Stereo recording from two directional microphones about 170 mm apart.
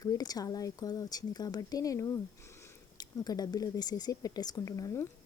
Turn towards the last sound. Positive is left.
turn(degrees=20)  # may be behind; listen again after turning